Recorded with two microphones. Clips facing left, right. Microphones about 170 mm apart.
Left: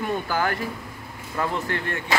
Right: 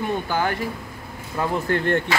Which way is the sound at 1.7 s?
65° right (ahead or behind).